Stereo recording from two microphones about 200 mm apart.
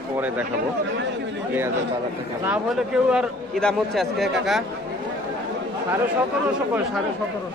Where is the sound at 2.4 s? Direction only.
5° right (ahead or behind).